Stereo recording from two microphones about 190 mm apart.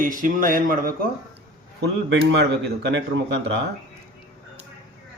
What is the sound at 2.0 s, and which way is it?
A man's voice, 65° right (ahead or behind).